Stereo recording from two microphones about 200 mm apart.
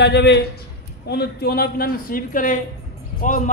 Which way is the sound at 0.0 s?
60° left (ahead or behind).